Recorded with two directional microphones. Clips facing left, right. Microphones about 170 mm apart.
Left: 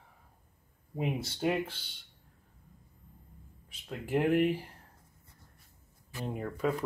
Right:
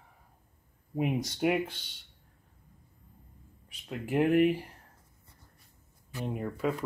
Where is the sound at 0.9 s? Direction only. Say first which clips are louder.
Right 4 dB; 15° right (ahead or behind).